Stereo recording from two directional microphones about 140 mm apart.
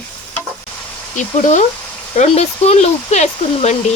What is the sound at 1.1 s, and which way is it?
Speech, 60° left (ahead or behind).